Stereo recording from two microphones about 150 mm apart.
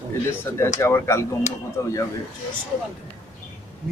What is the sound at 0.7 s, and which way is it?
A man's voice, 15° left (ahead or behind).